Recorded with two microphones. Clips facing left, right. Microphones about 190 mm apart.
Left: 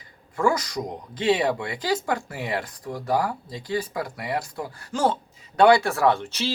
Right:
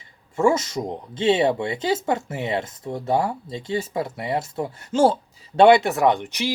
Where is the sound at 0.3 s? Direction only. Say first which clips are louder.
Right 3 dB; 25° right (ahead or behind).